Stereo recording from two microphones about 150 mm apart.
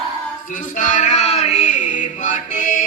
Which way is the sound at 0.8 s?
55° left (ahead or behind).